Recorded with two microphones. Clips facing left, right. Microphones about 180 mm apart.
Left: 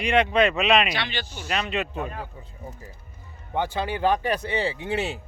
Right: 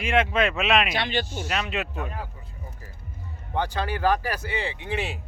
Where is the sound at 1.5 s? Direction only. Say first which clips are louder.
Left 1 dB; centre (ahead or behind).